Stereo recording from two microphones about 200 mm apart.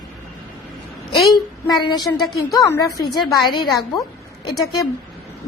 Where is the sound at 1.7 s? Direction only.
20° left (ahead or behind).